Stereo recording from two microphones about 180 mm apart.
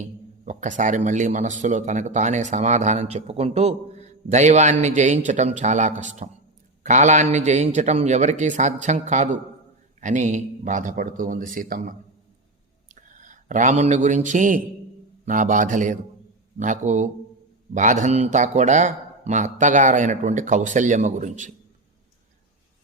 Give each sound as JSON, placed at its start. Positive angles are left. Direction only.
{"t": 0.0, "sound": "a man's voice", "side_deg": -40}